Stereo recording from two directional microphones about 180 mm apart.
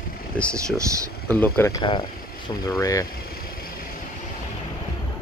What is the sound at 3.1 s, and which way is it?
Vehicle, 55° left (ahead or behind).